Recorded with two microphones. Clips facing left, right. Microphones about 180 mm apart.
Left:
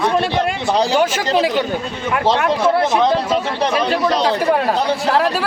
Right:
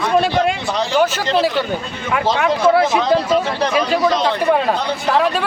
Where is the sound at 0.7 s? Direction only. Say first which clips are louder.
Left 4 dB; 35° left (ahead or behind).